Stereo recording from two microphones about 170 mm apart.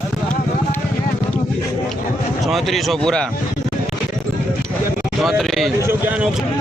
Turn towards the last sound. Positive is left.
turn(degrees=0)  # may be behind; listen again after turning